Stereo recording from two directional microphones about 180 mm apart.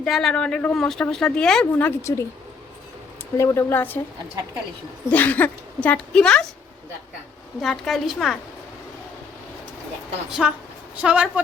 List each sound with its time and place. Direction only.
0.0 s speech: centre (ahead or behind)
2.1 s speech: 20° left (ahead or behind)
3.3 s a woman's voice: 15° left (ahead or behind)
5.1 s a woman's voice: 10° left (ahead or behind)
7.6 s speech: centre (ahead or behind)
10.4 s a woman's voice: centre (ahead or behind)